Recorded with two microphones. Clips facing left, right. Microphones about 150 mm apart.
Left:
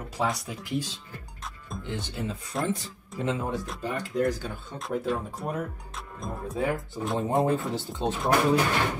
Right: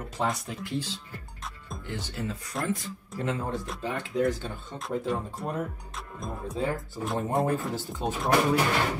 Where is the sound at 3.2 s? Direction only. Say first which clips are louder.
Left 2 dB; 15° left (ahead or behind).